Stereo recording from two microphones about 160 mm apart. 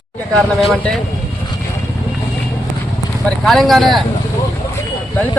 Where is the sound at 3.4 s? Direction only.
Centre (ahead or behind).